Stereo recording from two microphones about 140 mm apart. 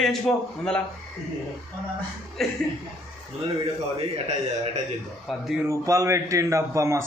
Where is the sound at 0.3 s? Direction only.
5° left (ahead or behind).